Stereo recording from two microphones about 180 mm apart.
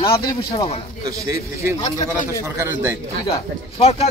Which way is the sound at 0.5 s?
30° left (ahead or behind).